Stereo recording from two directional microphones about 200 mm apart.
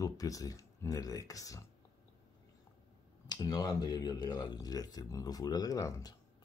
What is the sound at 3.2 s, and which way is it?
Speech, 20° left (ahead or behind).